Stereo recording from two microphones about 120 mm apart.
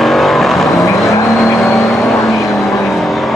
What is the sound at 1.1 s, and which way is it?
Vehicle, 25° left (ahead or behind).